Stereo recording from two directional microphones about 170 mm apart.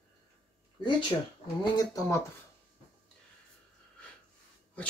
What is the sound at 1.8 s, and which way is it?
Speech, 20° left (ahead or behind).